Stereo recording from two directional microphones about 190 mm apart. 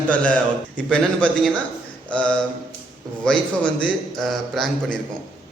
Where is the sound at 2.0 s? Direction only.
5° left (ahead or behind).